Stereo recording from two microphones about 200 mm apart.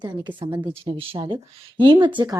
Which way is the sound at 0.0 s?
25° right (ahead or behind).